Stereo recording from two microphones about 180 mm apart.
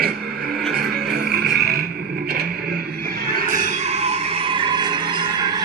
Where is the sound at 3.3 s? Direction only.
50° right (ahead or behind).